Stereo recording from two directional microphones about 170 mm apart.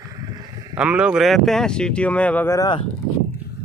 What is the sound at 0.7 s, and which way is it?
Speech, 5° right (ahead or behind).